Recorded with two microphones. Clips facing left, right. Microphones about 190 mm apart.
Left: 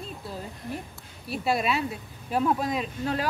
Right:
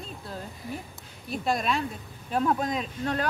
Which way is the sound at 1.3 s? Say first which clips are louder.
Left 1 dB; 5° left (ahead or behind).